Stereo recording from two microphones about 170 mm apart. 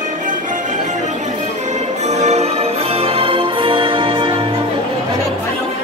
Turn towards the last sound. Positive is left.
turn(degrees=-30)  # may be behind; listen again after turning